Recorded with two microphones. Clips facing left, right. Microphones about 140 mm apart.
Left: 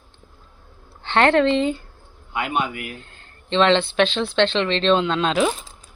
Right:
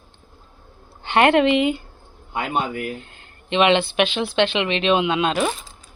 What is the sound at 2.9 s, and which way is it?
Speech, 15° right (ahead or behind).